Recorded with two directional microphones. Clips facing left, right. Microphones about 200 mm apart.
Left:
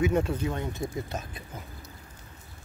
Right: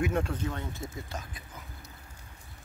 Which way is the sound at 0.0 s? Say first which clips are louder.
Left 4 dB; 5° left (ahead or behind).